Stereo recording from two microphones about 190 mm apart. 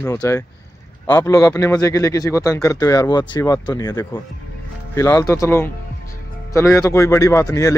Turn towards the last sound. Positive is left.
turn(degrees=15)  # may be behind; listen again after turning